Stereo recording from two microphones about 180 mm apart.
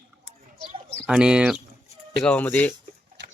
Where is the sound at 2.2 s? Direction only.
5° left (ahead or behind).